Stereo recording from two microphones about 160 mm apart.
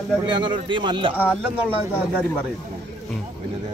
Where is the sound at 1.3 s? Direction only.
10° right (ahead or behind).